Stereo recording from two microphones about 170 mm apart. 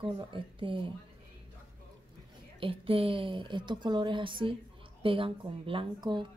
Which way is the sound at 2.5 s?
35° right (ahead or behind).